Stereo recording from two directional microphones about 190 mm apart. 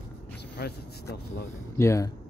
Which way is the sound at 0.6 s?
55° left (ahead or behind).